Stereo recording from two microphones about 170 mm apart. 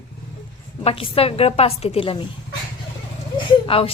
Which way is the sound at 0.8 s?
35° left (ahead or behind).